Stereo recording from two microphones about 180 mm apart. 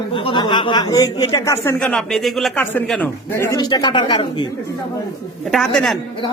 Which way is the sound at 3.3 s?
15° left (ahead or behind).